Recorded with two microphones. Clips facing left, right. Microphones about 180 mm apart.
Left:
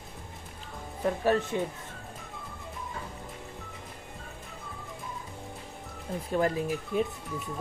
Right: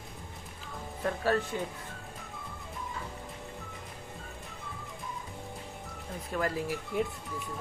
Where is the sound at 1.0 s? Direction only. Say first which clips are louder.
Left 3 dB; 15° left (ahead or behind).